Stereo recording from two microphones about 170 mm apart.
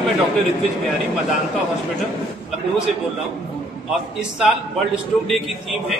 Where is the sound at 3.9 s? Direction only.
5° right (ahead or behind).